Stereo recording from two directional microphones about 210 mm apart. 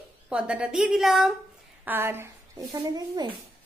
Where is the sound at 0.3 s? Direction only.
5° right (ahead or behind).